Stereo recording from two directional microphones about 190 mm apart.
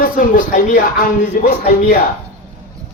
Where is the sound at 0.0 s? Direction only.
45° left (ahead or behind).